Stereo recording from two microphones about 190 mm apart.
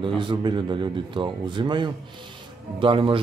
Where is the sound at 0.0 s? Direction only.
25° right (ahead or behind).